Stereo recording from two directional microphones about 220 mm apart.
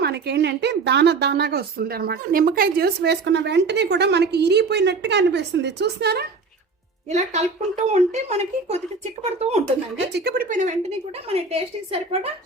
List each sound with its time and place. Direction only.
0.0 s a woman's voice: 50° right (ahead or behind)
7.1 s speech: 30° right (ahead or behind)
10.1 s a woman's voice: 50° right (ahead or behind); by 12.3 s 25° right (ahead or behind)